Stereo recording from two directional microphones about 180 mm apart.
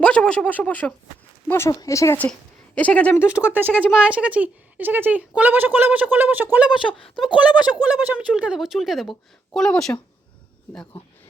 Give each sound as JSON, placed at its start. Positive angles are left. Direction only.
{"t": 0.0, "sound": "speech", "side_deg": 5}
{"t": 3.2, "sound": "speech", "side_deg": -5}
{"t": 6.7, "sound": "a woman's voice", "side_deg": 30}
{"t": 7.9, "sound": "a woman's voice", "side_deg": -10}